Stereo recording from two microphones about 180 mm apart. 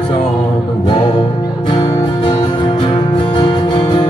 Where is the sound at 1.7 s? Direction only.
30° left (ahead or behind).